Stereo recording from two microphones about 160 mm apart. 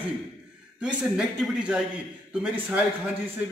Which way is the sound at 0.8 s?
5° right (ahead or behind).